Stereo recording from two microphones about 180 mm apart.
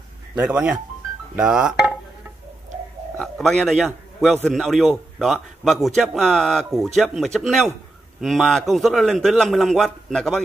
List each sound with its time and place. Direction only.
0.4 s speech: 5° right (ahead or behind)
3.2 s a man's voice: centre (ahead or behind)